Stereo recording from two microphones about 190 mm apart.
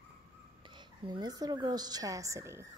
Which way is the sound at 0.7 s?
20° right (ahead or behind).